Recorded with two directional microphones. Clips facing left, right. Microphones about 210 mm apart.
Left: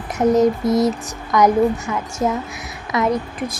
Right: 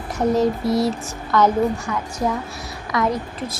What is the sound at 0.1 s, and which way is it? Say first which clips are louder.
A woman's voice: left 4 dB; 20° left (ahead or behind).